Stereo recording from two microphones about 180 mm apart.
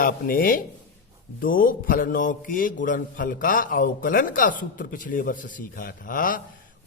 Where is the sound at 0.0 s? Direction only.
50° left (ahead or behind).